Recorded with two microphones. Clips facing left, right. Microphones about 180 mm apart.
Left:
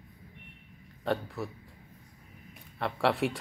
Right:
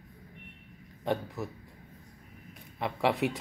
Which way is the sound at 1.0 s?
15° right (ahead or behind).